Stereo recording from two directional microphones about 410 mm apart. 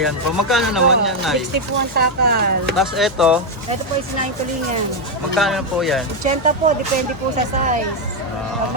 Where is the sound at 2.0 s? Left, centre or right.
Right.